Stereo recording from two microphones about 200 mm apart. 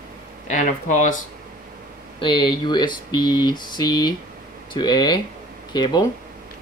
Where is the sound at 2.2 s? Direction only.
25° left (ahead or behind).